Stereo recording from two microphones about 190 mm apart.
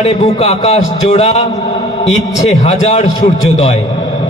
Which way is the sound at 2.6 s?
35° left (ahead or behind).